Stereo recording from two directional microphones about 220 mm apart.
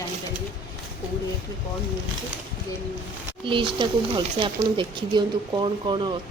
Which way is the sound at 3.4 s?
20° right (ahead or behind).